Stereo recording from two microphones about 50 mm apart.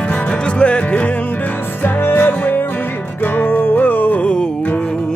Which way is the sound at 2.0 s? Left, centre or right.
Left.